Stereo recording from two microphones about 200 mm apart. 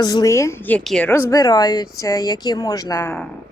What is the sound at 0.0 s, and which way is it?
A woman's voice, 20° left (ahead or behind).